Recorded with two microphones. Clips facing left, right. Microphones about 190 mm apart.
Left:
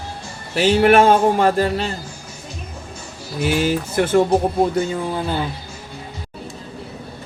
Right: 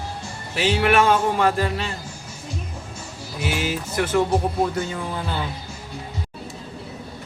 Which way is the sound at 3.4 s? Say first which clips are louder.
Left 7 dB; 40° left (ahead or behind).